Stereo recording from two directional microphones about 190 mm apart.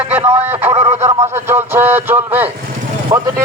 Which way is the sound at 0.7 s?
35° right (ahead or behind).